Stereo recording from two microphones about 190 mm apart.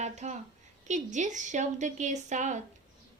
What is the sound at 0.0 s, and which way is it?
A woman's voice, 35° right (ahead or behind).